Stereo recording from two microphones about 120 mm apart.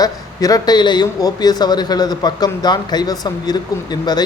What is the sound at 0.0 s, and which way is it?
A man's voice, 30° left (ahead or behind).